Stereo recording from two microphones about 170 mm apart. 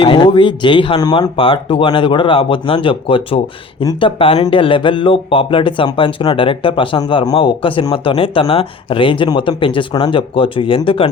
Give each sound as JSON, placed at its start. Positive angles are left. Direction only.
{"t": 0.0, "sound": "speech", "side_deg": 30}